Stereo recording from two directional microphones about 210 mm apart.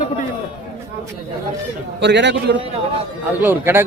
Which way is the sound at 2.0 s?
55° right (ahead or behind).